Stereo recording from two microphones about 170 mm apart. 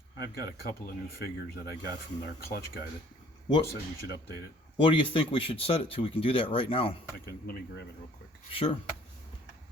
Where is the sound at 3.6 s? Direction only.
70° left (ahead or behind).